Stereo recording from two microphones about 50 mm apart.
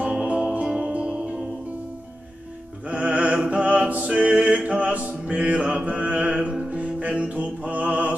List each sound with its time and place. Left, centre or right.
0.2 s music: right
2.9 s music: right